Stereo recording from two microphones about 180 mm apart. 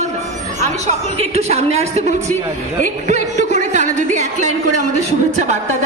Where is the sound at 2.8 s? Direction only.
40° right (ahead or behind).